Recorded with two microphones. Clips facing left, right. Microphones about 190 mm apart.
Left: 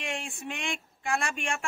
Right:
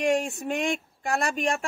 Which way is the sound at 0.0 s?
40° right (ahead or behind).